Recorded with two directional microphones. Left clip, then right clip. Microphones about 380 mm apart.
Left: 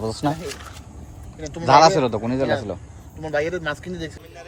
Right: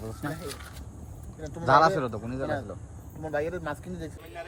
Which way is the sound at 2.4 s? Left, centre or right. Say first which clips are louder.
Left 6 dB; left.